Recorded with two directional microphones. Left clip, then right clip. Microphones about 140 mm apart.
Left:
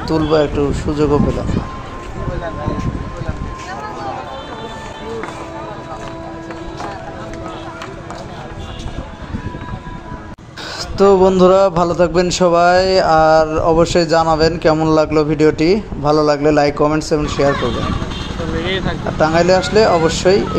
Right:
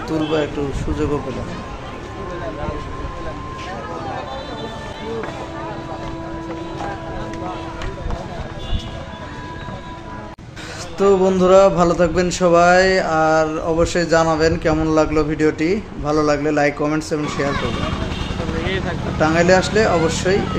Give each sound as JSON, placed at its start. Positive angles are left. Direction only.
{"t": 0.0, "sound": "speech", "side_deg": 30}
{"t": 11.0, "sound": "a man's voice", "side_deg": 35}
{"t": 18.6, "sound": "speech", "side_deg": 40}